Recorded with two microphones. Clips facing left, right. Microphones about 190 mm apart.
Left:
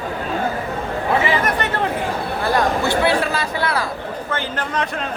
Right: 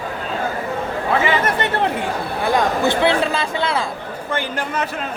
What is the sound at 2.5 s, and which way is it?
Speech, 20° right (ahead or behind).